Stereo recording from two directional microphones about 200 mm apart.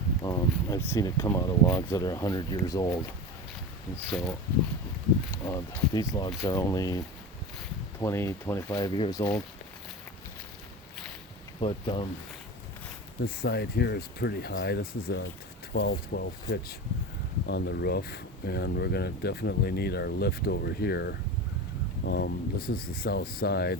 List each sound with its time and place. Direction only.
0.2 s speech: 20° left (ahead or behind)
5.3 s speech: 15° left (ahead or behind)
8.0 s speech: 15° left (ahead or behind)
11.6 s speech: 25° left (ahead or behind)
13.2 s speech: 50° left (ahead or behind)